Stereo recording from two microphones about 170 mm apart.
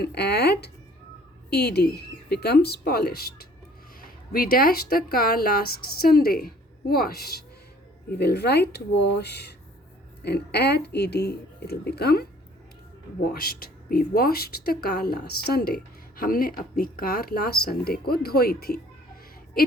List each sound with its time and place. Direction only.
0.0 s speech: 70° left (ahead or behind)
13.3 s speech: 65° left (ahead or behind)